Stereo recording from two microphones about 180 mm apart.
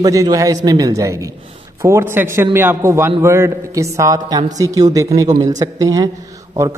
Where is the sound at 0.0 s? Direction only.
20° right (ahead or behind).